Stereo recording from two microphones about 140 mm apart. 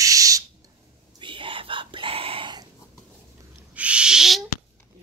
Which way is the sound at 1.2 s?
35° right (ahead or behind).